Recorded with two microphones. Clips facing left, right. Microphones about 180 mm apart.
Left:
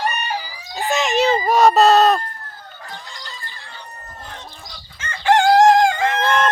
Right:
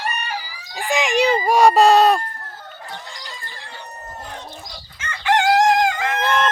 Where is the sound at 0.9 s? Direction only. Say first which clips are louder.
Even; 15° right (ahead or behind).